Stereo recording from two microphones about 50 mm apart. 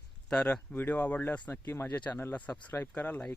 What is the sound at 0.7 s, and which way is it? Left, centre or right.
Speech, left.